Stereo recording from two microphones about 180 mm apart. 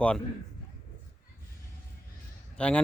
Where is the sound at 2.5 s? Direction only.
5° left (ahead or behind).